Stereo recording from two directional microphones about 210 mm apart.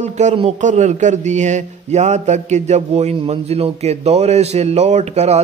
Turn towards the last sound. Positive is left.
turn(degrees=-30)  # may be behind; listen again after turning